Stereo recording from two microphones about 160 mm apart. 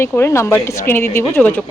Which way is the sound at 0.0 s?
15° left (ahead or behind).